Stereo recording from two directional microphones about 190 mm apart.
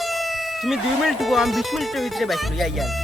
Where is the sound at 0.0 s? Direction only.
Centre (ahead or behind).